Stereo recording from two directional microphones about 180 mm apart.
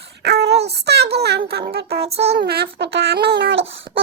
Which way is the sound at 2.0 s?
35° right (ahead or behind).